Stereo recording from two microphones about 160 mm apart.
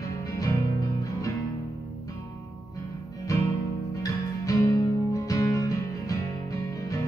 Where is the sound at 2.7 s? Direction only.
20° left (ahead or behind).